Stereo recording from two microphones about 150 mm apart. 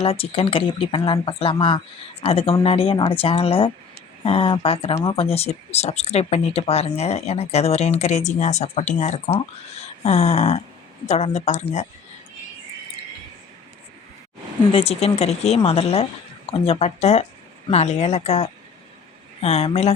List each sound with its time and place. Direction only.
0.0 s speech: 40° left (ahead or behind)
14.7 s speech: 40° left (ahead or behind)